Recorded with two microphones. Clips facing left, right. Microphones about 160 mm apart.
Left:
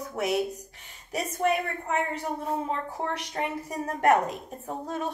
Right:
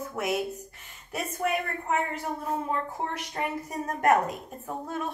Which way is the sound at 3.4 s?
35° left (ahead or behind).